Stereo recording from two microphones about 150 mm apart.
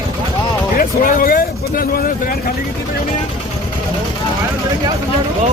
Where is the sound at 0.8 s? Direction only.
70° left (ahead or behind).